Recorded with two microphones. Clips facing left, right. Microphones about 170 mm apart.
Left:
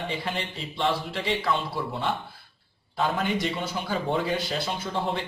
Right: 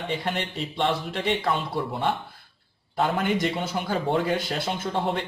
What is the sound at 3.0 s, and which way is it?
Speech, 55° right (ahead or behind).